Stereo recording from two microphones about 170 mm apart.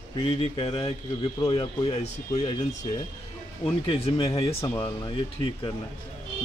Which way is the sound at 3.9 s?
35° left (ahead or behind).